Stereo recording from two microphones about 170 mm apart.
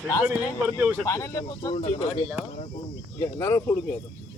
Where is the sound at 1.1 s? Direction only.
20° left (ahead or behind).